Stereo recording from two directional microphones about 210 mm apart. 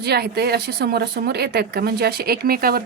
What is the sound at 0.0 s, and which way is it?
A woman's voice, 50° right (ahead or behind).